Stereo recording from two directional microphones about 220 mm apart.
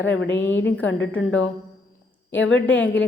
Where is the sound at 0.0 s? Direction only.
60° left (ahead or behind).